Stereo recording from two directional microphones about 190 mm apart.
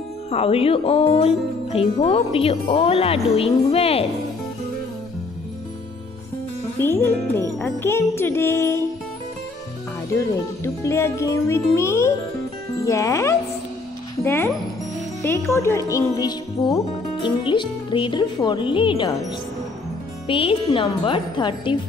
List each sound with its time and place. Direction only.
0.3 s speech: 30° left (ahead or behind)
6.8 s music: 10° left (ahead or behind)
10.1 s music: 15° left (ahead or behind)
15.2 s speech: 10° left (ahead or behind)
20.2 s speech: 30° left (ahead or behind)